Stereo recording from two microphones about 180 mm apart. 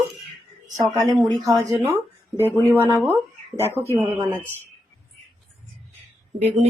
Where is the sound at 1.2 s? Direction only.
20° right (ahead or behind).